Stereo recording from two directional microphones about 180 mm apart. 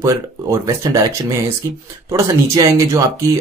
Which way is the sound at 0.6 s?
15° right (ahead or behind).